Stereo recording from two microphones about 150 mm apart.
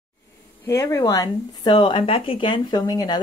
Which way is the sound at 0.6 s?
20° left (ahead or behind).